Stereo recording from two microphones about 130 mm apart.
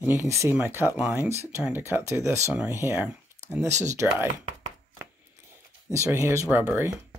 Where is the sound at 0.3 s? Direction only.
20° right (ahead or behind).